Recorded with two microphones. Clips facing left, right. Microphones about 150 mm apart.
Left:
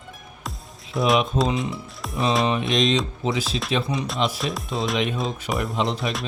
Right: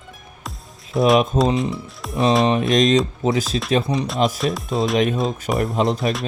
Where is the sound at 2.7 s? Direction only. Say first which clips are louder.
Right 5 dB; 45° right (ahead or behind).